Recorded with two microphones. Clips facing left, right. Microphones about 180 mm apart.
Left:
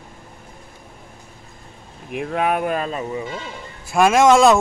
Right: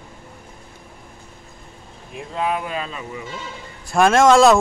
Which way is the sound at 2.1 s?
65° left (ahead or behind).